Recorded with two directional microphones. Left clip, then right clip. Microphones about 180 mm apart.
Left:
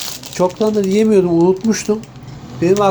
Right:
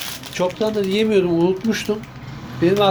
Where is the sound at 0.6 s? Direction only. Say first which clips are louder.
Left 4 dB; 35° left (ahead or behind).